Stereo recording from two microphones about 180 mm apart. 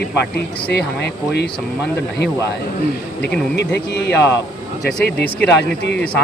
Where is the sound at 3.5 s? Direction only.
70° left (ahead or behind).